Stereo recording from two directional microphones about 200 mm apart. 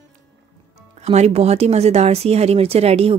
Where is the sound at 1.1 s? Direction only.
30° right (ahead or behind).